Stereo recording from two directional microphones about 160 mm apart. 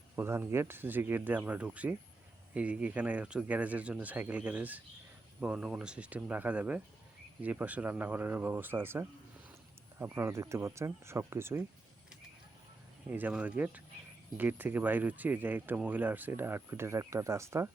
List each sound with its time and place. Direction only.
0.2 s speech: 15° right (ahead or behind)
13.1 s speech: 10° right (ahead or behind)